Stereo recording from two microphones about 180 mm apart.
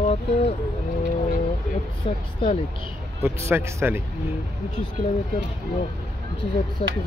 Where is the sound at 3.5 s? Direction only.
15° right (ahead or behind).